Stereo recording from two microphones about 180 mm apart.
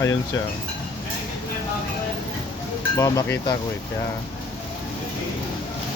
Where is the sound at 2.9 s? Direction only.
20° left (ahead or behind).